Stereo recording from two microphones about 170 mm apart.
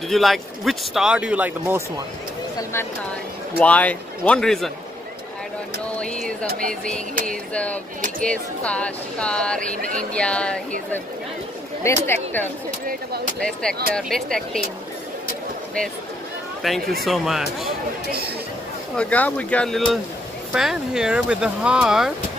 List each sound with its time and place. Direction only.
0.1 s speech: centre (ahead or behind)
3.5 s speech: 10° left (ahead or behind)
5.9 s speech: 5° left (ahead or behind)
6.4 s speech: 60° right (ahead or behind)
6.7 s speech: 5° left (ahead or behind)
11.8 s speech: 10° left (ahead or behind)
16.6 s speech: centre (ahead or behind)
18.9 s speech: 10° left (ahead or behind)